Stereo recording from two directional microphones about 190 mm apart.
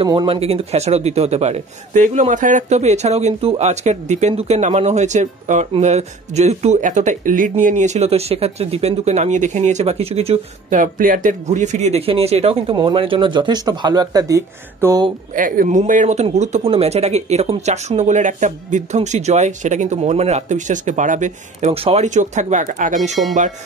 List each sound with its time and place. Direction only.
0.0 s a man's voice: 25° right (ahead or behind)
15.3 s a man's voice: 45° right (ahead or behind)